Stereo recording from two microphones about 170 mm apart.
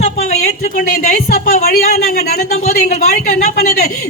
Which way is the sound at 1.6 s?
65° left (ahead or behind).